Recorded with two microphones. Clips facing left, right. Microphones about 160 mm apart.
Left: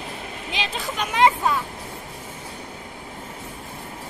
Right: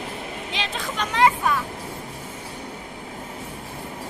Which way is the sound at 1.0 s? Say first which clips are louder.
Left 1 dB; 20° left (ahead or behind).